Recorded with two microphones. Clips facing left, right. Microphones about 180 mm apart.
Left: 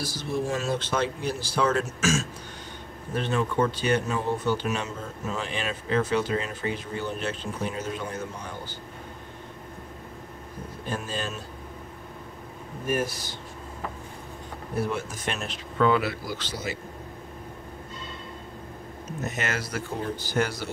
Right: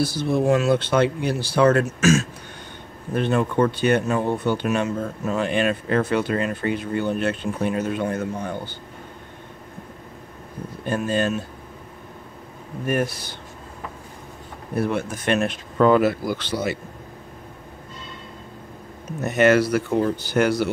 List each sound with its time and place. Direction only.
0.0 s speech: 65° right (ahead or behind)
10.9 s speech: 55° right (ahead or behind)
12.8 s speech: 60° right (ahead or behind)
14.8 s speech: 60° right (ahead or behind)
15.8 s speech: 45° right (ahead or behind); by 16.7 s 65° right (ahead or behind)
19.2 s speech: 65° right (ahead or behind)